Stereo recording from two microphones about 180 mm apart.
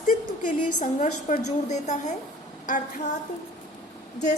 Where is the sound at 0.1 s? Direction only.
45° left (ahead or behind).